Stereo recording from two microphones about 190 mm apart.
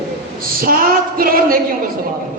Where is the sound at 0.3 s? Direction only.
50° right (ahead or behind).